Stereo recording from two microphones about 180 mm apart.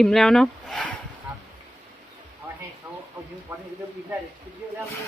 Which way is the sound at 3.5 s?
10° right (ahead or behind).